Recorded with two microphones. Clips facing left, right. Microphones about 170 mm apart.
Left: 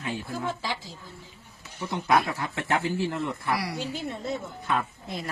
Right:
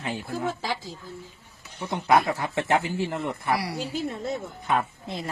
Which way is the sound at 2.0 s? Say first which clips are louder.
Right 3 dB; 25° right (ahead or behind).